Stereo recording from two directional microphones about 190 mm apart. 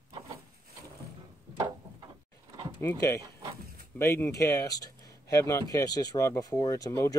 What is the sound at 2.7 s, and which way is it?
Speech, 15° left (ahead or behind).